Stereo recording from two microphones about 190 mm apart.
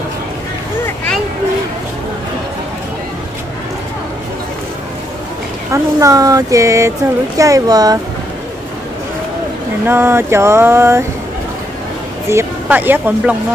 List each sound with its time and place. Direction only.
5.7 s speech: 15° right (ahead or behind)
9.8 s speech: 10° right (ahead or behind)
12.3 s speech: 10° right (ahead or behind)